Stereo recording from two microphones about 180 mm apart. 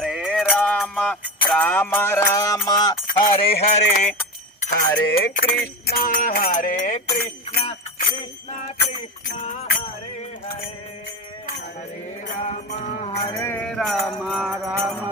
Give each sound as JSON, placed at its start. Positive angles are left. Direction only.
{"t": 0.0, "sound": "music", "side_deg": 0}
{"t": 2.6, "sound": "a sound", "side_deg": 20}
{"t": 3.2, "sound": "a sound", "side_deg": 30}
{"t": 4.9, "sound": "a sound", "side_deg": 60}
{"t": 5.5, "sound": "music", "side_deg": 55}
{"t": 7.5, "sound": "jingle bell", "side_deg": 35}
{"t": 9.4, "sound": "music", "side_deg": 40}
{"t": 12.4, "sound": "music", "side_deg": 40}
{"t": 13.3, "sound": "mantra", "side_deg": 15}